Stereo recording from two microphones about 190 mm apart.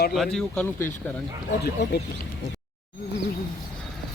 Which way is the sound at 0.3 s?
5° left (ahead or behind).